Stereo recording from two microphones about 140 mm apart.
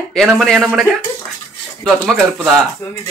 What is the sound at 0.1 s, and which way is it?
Speech, centre (ahead or behind).